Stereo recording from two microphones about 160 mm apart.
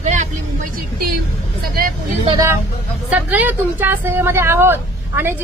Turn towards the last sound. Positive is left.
turn(degrees=-15)  # may be behind; listen again after turning